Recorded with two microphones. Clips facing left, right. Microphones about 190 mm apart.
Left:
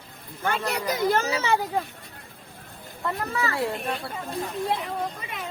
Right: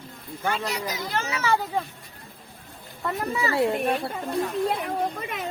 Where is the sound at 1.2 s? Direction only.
30° left (ahead or behind).